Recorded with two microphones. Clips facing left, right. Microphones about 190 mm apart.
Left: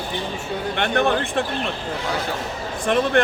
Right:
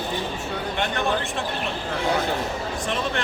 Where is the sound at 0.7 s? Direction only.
60° left (ahead or behind).